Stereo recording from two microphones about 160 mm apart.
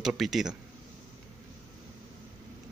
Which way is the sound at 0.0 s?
Centre (ahead or behind).